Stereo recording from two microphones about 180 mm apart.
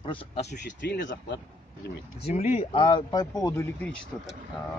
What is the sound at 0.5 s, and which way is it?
Speech, 65° left (ahead or behind).